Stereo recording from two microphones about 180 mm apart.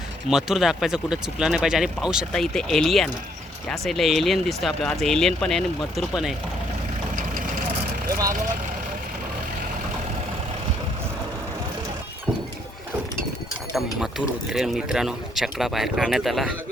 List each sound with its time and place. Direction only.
0.3 s speech: centre (ahead or behind)
7.2 s vehicle: 50° right (ahead or behind)
14.0 s speech: 5° right (ahead or behind)